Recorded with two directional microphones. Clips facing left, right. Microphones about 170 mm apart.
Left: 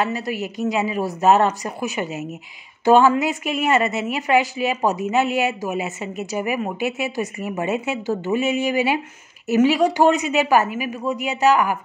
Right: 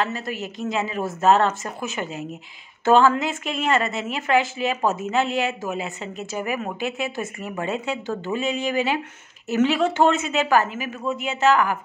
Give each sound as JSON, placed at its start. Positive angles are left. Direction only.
{"t": 0.0, "sound": "speech", "side_deg": 15}